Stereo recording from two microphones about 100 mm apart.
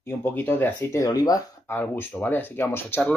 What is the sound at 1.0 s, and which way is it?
Speech, 40° left (ahead or behind).